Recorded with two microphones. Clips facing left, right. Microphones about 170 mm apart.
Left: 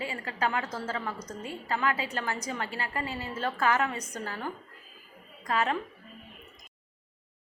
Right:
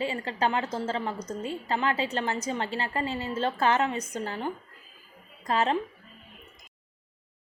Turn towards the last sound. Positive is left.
turn(degrees=-25)  # may be behind; listen again after turning